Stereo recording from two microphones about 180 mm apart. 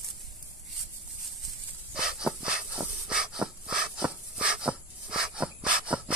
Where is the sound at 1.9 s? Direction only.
5° right (ahead or behind).